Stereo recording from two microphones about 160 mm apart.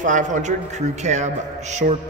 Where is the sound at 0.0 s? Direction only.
50° right (ahead or behind).